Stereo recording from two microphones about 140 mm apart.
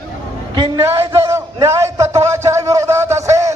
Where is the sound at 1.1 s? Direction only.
20° right (ahead or behind).